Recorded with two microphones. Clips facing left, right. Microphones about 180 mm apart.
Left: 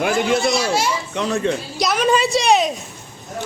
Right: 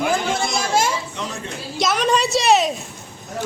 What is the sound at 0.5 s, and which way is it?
Speech, 50° right (ahead or behind).